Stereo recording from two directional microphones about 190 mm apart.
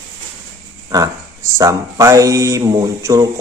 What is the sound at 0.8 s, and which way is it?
Speech, 20° right (ahead or behind).